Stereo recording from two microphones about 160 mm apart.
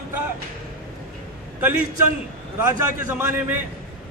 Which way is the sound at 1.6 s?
10° right (ahead or behind).